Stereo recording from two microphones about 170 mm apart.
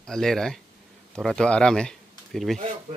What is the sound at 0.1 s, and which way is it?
Speech, 5° left (ahead or behind).